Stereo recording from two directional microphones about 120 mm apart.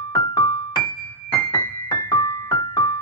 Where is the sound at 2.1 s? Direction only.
40° left (ahead or behind).